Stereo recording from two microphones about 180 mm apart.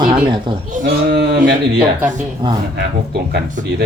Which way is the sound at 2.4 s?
25° right (ahead or behind).